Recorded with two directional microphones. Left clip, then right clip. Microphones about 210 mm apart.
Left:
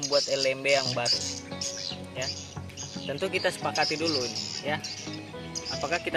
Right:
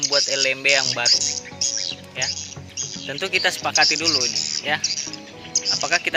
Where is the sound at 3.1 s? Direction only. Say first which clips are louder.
Right 7 dB; 5° right (ahead or behind).